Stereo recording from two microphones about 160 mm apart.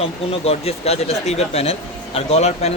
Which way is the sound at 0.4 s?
40° left (ahead or behind).